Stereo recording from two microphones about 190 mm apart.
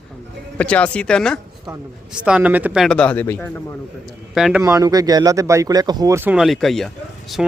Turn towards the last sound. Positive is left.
turn(degrees=0)  # may be behind; listen again after turning